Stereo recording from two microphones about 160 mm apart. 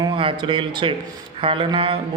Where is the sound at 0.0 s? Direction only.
35° right (ahead or behind).